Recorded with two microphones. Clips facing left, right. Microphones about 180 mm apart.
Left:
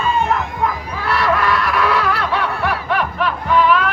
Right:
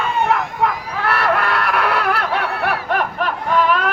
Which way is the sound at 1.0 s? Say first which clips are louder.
Left 1 dB; 60° right (ahead or behind).